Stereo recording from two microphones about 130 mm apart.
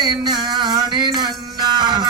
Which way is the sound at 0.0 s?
35° right (ahead or behind).